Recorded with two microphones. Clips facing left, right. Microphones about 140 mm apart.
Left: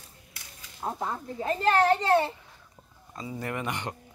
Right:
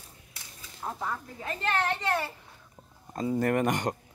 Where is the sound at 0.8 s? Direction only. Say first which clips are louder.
Left 2 dB; 30° left (ahead or behind).